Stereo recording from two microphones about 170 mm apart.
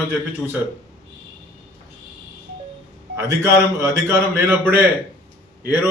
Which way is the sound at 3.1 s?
15° right (ahead or behind).